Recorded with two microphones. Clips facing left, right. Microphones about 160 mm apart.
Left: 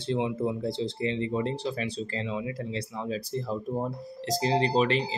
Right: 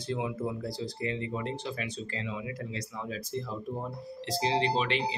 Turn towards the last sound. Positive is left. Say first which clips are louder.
# left 4 dB
turn(degrees=40)  # may be behind; listen again after turning